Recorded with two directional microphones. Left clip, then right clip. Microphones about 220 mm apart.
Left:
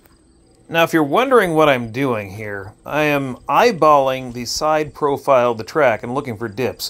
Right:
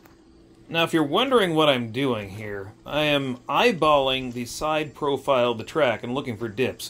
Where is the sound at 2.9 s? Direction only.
15° left (ahead or behind).